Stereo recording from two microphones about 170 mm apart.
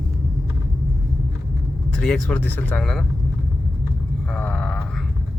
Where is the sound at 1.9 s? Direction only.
5° left (ahead or behind).